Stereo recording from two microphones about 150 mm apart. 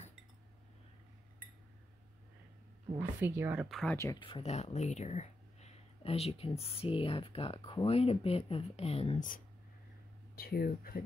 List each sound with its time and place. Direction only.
3.0 s a woman's voice: 15° right (ahead or behind)
3.6 s speech: centre (ahead or behind)
3.9 s speech: 20° left (ahead or behind)
4.2 s speech: 40° left (ahead or behind)
10.3 s speech: 90° left